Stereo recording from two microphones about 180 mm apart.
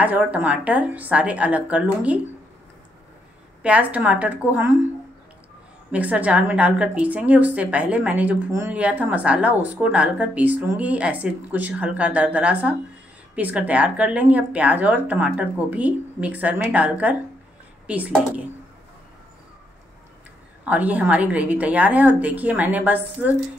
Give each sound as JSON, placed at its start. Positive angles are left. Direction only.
{"t": 0.0, "sound": "a woman's voice", "side_deg": -10}
{"t": 3.6, "sound": "a woman's voice", "side_deg": -5}
{"t": 5.9, "sound": "a woman's voice", "side_deg": -10}
{"t": 20.6, "sound": "a woman's voice", "side_deg": -10}